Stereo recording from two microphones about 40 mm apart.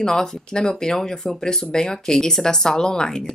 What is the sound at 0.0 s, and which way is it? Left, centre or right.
Speech, centre.